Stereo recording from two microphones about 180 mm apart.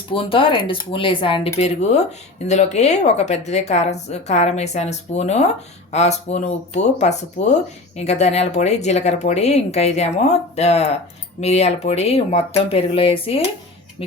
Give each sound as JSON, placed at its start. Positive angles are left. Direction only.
{"t": 0.1, "sound": "a woman's voice", "side_deg": 30}